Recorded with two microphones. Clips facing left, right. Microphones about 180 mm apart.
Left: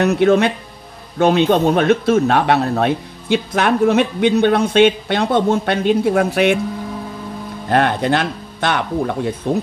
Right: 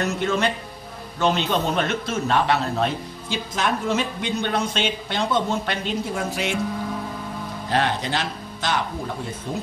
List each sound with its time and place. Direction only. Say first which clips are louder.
0.0 s speech: left 9 dB; 65° left (ahead or behind)
7.7 s speech: left 8 dB; 55° left (ahead or behind)